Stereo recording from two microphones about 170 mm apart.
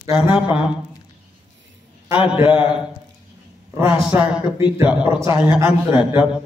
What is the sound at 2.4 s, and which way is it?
Speech, 5° right (ahead or behind).